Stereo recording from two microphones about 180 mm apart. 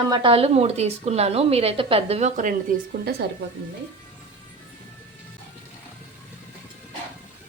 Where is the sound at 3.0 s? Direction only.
60° right (ahead or behind).